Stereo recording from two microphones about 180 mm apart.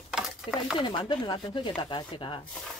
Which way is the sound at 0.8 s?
25° left (ahead or behind).